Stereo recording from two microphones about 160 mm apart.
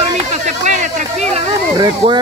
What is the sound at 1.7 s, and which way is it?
Speech, 25° right (ahead or behind).